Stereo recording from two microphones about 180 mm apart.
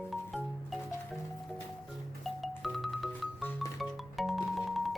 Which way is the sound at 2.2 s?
Centre (ahead or behind).